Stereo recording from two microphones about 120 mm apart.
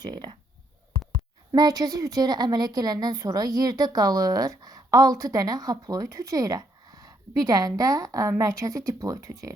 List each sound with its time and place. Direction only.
0.0 s a woman's voice: 40° right (ahead or behind)
1.5 s a woman's voice: 30° right (ahead or behind)